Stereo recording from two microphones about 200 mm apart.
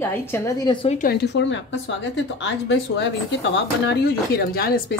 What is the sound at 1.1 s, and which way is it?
A woman's voice, 60° left (ahead or behind).